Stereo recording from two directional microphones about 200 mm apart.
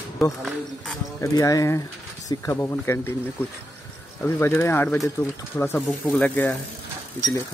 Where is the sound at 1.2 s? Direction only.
15° left (ahead or behind).